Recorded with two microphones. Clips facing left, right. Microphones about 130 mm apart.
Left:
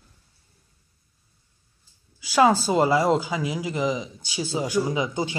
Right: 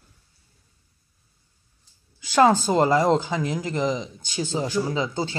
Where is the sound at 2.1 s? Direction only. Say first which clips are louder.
Right 1 dB; 5° left (ahead or behind).